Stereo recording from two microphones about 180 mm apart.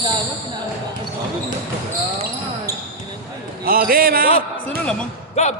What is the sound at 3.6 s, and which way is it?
Speech, 55° right (ahead or behind).